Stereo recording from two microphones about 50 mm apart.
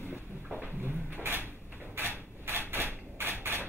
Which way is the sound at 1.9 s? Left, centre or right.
Right.